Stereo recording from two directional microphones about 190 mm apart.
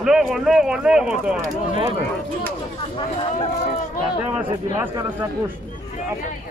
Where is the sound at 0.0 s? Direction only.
Centre (ahead or behind).